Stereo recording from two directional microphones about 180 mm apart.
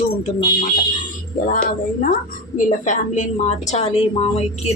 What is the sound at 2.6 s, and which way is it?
A woman's voice, 45° left (ahead or behind).